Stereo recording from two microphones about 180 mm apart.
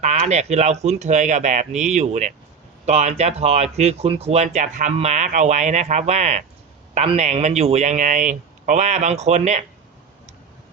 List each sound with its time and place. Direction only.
0.0 s speech: 40° right (ahead or behind)